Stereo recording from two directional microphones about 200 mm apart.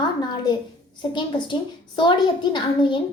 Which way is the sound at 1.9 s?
25° left (ahead or behind).